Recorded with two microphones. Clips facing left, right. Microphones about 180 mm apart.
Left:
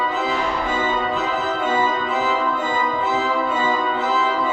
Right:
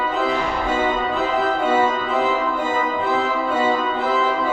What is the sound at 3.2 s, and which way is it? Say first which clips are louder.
Music: right 1 dB; 60° right (ahead or behind).